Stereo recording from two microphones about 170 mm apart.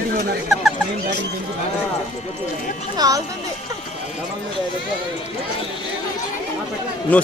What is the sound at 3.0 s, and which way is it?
Speech, 20° right (ahead or behind).